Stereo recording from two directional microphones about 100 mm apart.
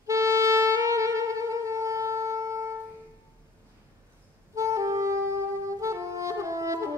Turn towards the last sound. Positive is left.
turn(degrees=-30)  # may be behind; listen again after turning